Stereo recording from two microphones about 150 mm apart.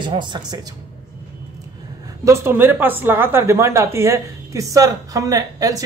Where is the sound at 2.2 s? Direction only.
15° right (ahead or behind).